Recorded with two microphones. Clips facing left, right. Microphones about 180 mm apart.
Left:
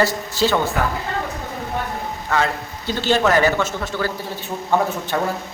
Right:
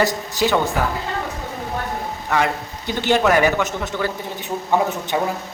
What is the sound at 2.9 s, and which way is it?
Speech, 15° right (ahead or behind).